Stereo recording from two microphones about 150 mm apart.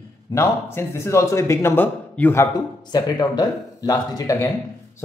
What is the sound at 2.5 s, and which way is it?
A man's voice, 25° left (ahead or behind).